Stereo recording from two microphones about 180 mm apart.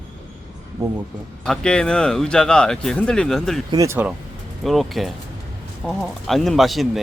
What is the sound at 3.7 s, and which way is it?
Speech, 15° right (ahead or behind).